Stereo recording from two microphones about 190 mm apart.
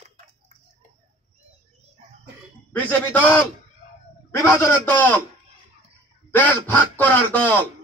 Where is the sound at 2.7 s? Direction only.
10° left (ahead or behind).